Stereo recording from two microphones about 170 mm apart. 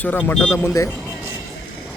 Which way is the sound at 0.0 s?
10° left (ahead or behind).